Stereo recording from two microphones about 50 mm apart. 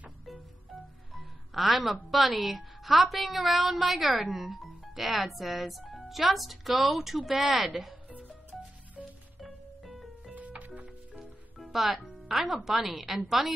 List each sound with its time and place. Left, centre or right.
1.1 s music: centre
2.0 s a woman's voice: centre
8.5 s music: centre
10.3 s music: right
11.7 s speech: centre